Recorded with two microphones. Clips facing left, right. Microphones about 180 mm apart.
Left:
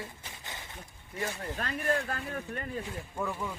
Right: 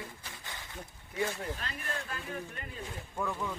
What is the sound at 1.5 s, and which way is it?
Speech, 50° left (ahead or behind).